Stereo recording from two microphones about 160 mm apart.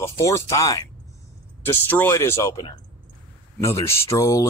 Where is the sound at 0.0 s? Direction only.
15° left (ahead or behind).